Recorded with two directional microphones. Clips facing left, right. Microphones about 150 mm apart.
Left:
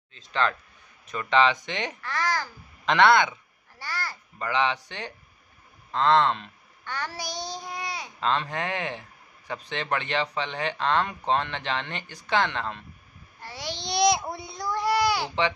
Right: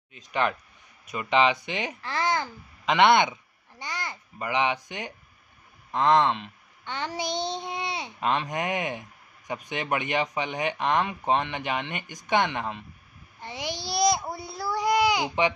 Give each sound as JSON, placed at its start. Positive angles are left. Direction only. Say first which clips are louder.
{"t": 0.1, "sound": "speech", "louder": "even", "side_deg": -15}
{"t": 2.0, "sound": "a child's voice", "louder": "right 3 dB", "side_deg": -25}
{"t": 8.2, "sound": "speech", "louder": "even", "side_deg": -15}
{"t": 13.4, "sound": "babbling", "louder": "right 2 dB", "side_deg": -15}